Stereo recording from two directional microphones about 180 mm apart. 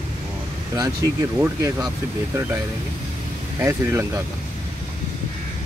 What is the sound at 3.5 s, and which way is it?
Speech, 15° right (ahead or behind).